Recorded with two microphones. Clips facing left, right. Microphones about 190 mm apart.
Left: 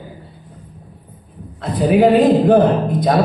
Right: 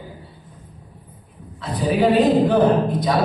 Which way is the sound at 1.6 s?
55° left (ahead or behind).